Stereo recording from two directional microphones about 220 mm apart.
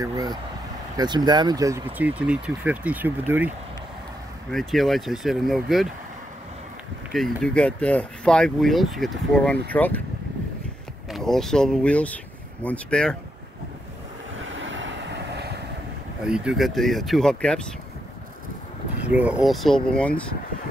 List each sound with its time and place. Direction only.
0.0 s speech: 15° right (ahead or behind); by 5.9 s centre (ahead or behind)
7.1 s speech: 5° left (ahead or behind)
11.1 s speech: centre (ahead or behind)
14.4 s vehicle: 60° right (ahead or behind)
16.3 s speech: 5° right (ahead or behind)
19.0 s speech: 5° right (ahead or behind)